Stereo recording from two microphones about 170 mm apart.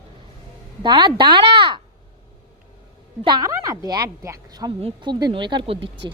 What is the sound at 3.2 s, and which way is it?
A woman's voice, 25° right (ahead or behind).